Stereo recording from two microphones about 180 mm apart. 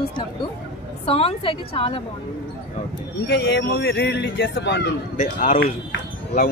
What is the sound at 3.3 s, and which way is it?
Speech, 75° left (ahead or behind).